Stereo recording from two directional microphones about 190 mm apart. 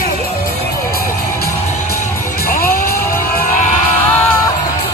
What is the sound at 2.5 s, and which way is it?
Music, 50° left (ahead or behind).